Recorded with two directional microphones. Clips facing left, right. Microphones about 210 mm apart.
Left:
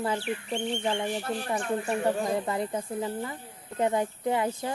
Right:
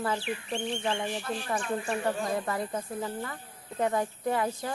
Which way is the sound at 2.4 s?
20° left (ahead or behind).